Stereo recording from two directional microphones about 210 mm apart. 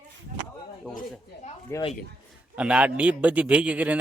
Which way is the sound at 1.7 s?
10° left (ahead or behind).